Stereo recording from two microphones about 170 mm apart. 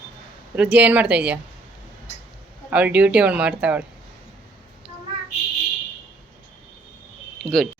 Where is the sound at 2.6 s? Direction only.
10° right (ahead or behind).